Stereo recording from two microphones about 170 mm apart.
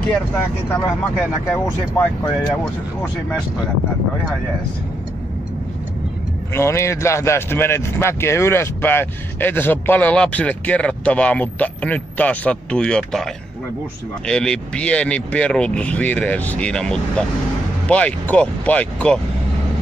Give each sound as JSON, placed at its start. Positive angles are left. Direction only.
{"t": 0.7, "sound": "a man's voice", "side_deg": 20}
{"t": 6.5, "sound": "a man's voice", "side_deg": 15}